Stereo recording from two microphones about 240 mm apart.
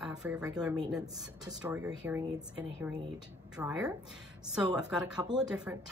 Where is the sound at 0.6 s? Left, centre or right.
Centre.